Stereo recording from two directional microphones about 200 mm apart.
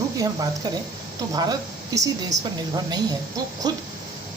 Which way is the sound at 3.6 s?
20° right (ahead or behind).